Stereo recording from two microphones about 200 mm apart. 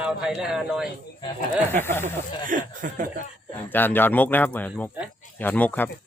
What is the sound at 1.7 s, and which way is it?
Speech, 10° left (ahead or behind).